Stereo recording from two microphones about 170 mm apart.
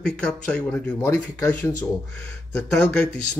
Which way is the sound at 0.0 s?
5° left (ahead or behind).